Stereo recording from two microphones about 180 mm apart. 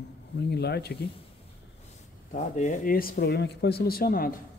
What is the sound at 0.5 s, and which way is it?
Speech, 65° left (ahead or behind).